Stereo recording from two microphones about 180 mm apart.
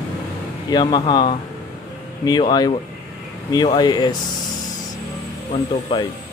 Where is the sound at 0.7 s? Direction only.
25° left (ahead or behind).